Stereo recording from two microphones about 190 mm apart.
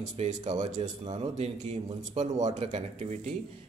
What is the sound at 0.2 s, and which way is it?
A man's voice, 40° right (ahead or behind).